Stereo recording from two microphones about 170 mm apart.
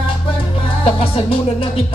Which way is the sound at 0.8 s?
35° left (ahead or behind).